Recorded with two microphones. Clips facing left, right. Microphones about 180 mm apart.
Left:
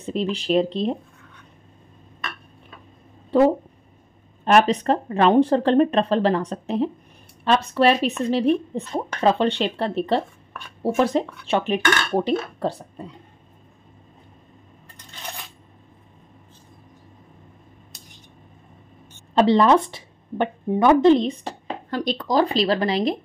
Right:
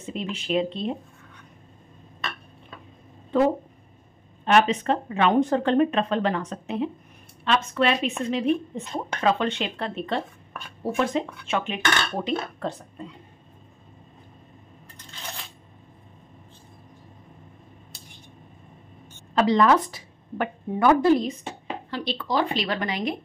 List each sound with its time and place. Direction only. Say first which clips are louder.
0.0 s speech: left 7 dB; 35° left (ahead or behind)
3.3 s a sound: left 4 dB; 35° left (ahead or behind)
4.5 s speech: left 3 dB; 40° left (ahead or behind)
19.3 s a woman's voice: left 3 dB; 30° left (ahead or behind)
21.9 s speech: left 5 dB; 45° left (ahead or behind)